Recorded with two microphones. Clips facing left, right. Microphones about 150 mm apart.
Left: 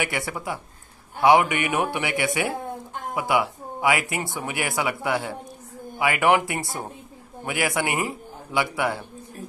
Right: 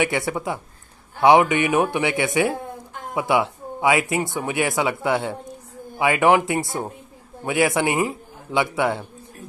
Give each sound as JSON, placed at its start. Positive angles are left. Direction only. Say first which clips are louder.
{"t": 0.0, "sound": "speech", "louder": "right 6 dB", "side_deg": -20}